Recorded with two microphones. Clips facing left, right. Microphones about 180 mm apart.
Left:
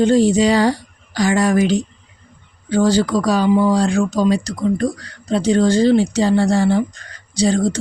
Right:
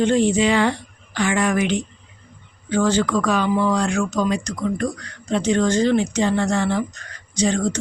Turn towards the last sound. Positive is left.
turn(degrees=35)  # may be behind; listen again after turning